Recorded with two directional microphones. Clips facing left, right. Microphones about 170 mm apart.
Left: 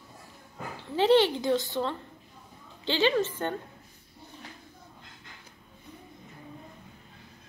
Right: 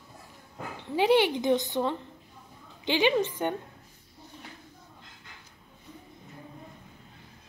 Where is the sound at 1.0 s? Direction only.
10° right (ahead or behind).